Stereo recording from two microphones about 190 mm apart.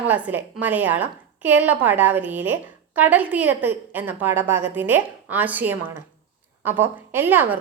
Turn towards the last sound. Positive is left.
turn(degrees=-10)  # may be behind; listen again after turning